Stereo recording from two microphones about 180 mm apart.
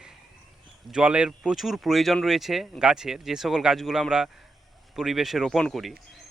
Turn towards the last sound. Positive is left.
turn(degrees=0)  # may be behind; listen again after turning